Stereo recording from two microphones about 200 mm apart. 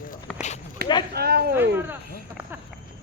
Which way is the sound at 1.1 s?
50° right (ahead or behind).